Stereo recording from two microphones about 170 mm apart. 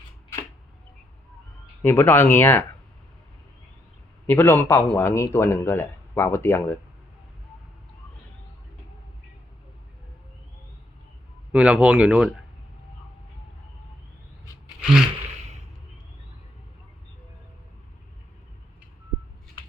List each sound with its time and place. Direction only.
1.8 s speech: 15° left (ahead or behind)
4.3 s speech: 15° left (ahead or behind)
11.5 s speech: 5° right (ahead or behind)
14.8 s a sound: 5° right (ahead or behind)